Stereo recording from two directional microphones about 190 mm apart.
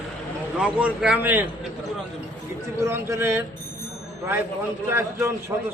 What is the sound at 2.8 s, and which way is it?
Speech, 15° right (ahead or behind).